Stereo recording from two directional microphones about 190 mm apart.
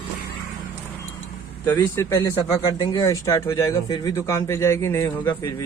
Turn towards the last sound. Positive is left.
turn(degrees=15)  # may be behind; listen again after turning